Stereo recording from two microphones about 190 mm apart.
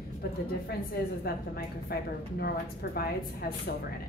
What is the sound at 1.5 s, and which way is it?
A woman's voice, 55° left (ahead or behind).